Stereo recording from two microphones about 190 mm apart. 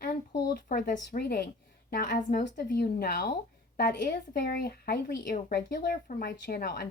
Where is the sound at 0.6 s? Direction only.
40° left (ahead or behind).